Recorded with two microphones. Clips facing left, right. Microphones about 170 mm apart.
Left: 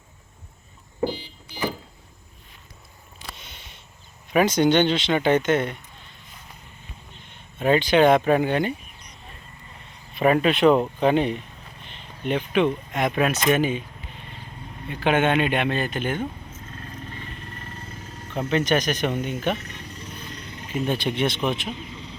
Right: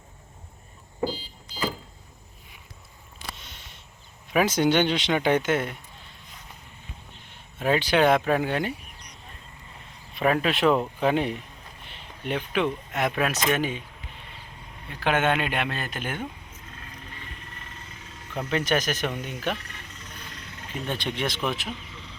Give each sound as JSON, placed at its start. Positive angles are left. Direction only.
{"t": 1.0, "sound": "vehicle", "side_deg": 65}
{"t": 3.3, "sound": "a sound", "side_deg": 0}
{"t": 4.3, "sound": "speech", "side_deg": -5}
{"t": 7.6, "sound": "speech", "side_deg": -5}
{"t": 10.2, "sound": "speech", "side_deg": 0}
{"t": 12.9, "sound": "speech", "side_deg": -5}
{"t": 14.8, "sound": "speech", "side_deg": 0}
{"t": 16.7, "sound": "vehicle", "side_deg": 40}
{"t": 18.3, "sound": "speech", "side_deg": -5}
{"t": 20.8, "sound": "speech", "side_deg": 10}
{"t": 21.3, "sound": "speech", "side_deg": 25}